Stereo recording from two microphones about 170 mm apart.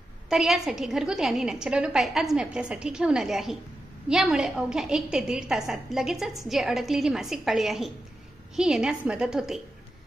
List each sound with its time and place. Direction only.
0.3 s a woman's voice: 5° right (ahead or behind)